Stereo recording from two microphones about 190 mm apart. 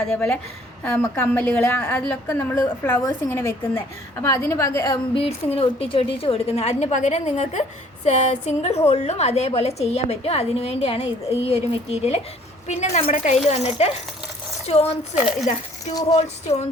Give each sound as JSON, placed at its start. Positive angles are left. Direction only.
{"t": 0.0, "sound": "a woman's voice", "side_deg": 5}
{"t": 15.1, "sound": "a woman's voice", "side_deg": -5}
{"t": 15.9, "sound": "mechanisms", "side_deg": 20}
{"t": 16.1, "sound": "a woman's voice", "side_deg": 35}